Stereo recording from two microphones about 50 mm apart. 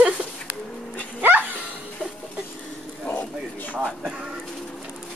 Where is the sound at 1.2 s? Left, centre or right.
Right.